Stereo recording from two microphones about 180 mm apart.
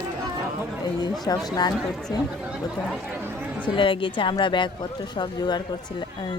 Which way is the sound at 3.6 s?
30° left (ahead or behind).